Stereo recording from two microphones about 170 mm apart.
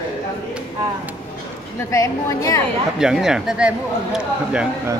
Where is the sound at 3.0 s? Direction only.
5° right (ahead or behind).